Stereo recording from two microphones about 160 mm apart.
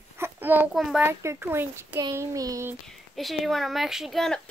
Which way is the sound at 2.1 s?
20° right (ahead or behind).